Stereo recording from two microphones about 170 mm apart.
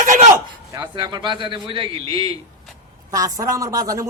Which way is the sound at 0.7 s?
20° right (ahead or behind).